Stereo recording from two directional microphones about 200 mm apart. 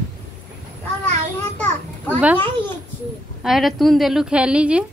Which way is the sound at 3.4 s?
Centre (ahead or behind).